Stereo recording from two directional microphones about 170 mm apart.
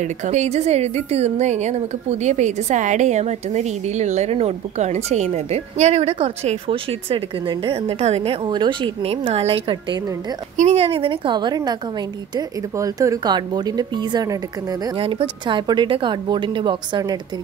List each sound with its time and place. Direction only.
0.0 s speech: 45° right (ahead or behind); by 14.8 s 20° right (ahead or behind)
15.0 s speech: 30° right (ahead or behind)